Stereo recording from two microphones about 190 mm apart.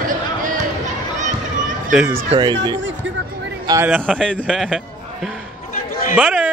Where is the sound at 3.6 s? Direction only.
15° right (ahead or behind).